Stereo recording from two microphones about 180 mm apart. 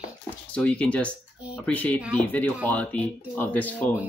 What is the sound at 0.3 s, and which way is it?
Speech, 5° left (ahead or behind).